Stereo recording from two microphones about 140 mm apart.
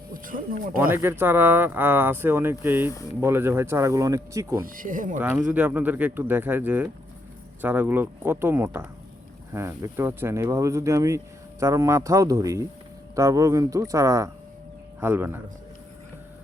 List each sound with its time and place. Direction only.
0.1 s speech: 80° right
0.9 s speech: 15° right (ahead or behind)
4.6 s speech: 75° right (ahead or behind)
5.2 s speech: 15° right (ahead or behind)